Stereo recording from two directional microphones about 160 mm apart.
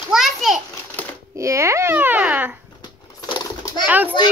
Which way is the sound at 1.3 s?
20° right (ahead or behind).